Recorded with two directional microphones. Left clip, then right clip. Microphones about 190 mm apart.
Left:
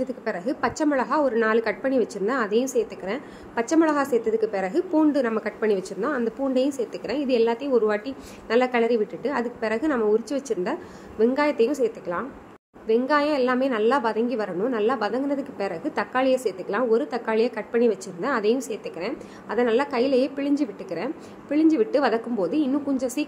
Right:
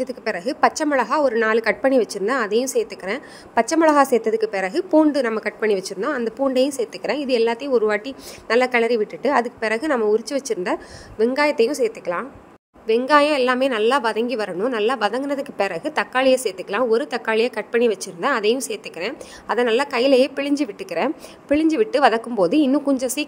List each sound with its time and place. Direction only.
0.0 s a woman's voice: 50° right (ahead or behind)